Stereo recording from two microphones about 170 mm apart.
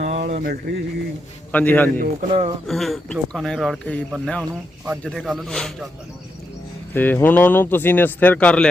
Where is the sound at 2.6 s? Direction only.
Centre (ahead or behind).